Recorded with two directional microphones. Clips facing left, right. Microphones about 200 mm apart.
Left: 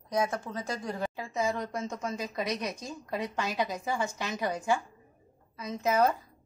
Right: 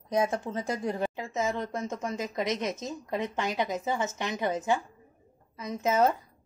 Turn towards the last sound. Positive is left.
turn(degrees=-20)  # may be behind; listen again after turning